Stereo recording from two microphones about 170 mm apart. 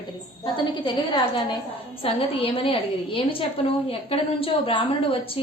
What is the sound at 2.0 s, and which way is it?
A woman's voice, 35° left (ahead or behind).